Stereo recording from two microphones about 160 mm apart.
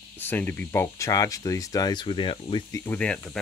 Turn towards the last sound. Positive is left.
turn(degrees=5)  # may be behind; listen again after turning